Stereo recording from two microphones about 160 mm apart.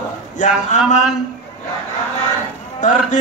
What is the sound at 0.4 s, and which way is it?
Speech, 50° left (ahead or behind).